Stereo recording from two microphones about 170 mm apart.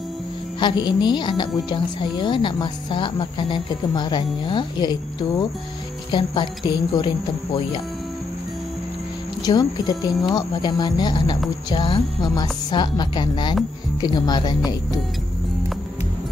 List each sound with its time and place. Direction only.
0.6 s a woman's voice: 25° left (ahead or behind)
6.1 s a woman's voice: 25° left (ahead or behind)
9.4 s a woman's voice: 25° left (ahead or behind)